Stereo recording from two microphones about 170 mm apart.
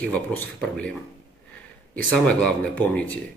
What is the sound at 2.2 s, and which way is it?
Speech, 5° left (ahead or behind).